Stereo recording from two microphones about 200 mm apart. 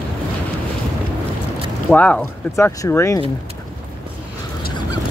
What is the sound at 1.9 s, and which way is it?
Speech, 5° left (ahead or behind).